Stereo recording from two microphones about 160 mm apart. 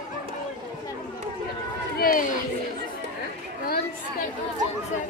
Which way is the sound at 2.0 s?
60° left (ahead or behind).